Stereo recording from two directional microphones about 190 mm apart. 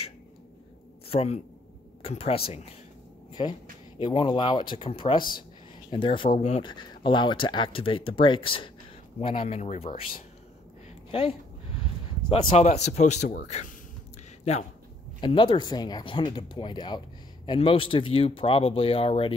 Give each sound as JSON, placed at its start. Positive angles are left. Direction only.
{"t": 1.0, "sound": "a man's voice", "side_deg": 30}
{"t": 11.1, "sound": "a sound", "side_deg": 30}
{"t": 12.3, "sound": "speech", "side_deg": 30}
{"t": 14.4, "sound": "speech", "side_deg": 35}
{"t": 15.1, "sound": "speech", "side_deg": 25}